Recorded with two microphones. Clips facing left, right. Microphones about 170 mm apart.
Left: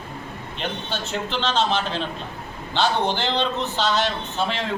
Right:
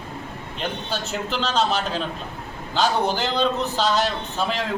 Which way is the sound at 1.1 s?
5° right (ahead or behind).